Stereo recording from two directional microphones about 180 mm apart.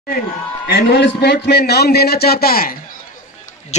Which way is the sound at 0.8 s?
70° left (ahead or behind).